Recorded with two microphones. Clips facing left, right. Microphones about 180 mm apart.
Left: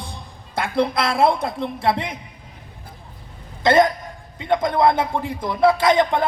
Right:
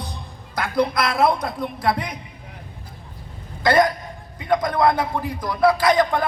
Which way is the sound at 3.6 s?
25° left (ahead or behind).